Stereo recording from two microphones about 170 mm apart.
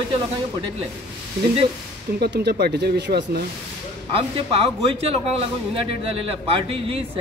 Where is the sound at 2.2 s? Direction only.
75° right (ahead or behind).